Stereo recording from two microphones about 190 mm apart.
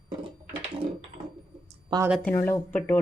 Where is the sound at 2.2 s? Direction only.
10° left (ahead or behind).